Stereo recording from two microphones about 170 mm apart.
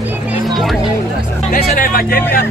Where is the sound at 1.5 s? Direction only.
55° left (ahead or behind).